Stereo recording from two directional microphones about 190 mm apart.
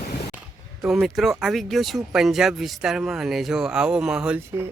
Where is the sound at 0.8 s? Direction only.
Centre (ahead or behind).